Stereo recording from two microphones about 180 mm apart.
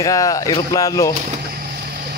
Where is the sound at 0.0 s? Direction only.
20° left (ahead or behind).